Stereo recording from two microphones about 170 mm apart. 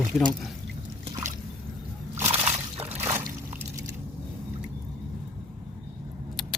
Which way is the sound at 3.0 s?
15° right (ahead or behind).